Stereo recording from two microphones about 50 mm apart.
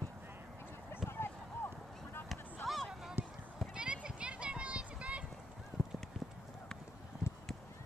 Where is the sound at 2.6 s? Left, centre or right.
Centre.